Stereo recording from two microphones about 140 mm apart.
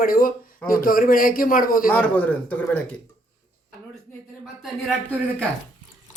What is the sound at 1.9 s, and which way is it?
A man's voice, 10° left (ahead or behind).